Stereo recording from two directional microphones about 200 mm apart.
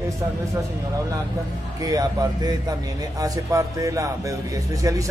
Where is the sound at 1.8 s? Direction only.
20° right (ahead or behind).